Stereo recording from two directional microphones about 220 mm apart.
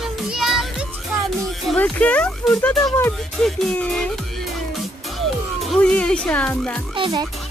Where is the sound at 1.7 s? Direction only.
5° left (ahead or behind).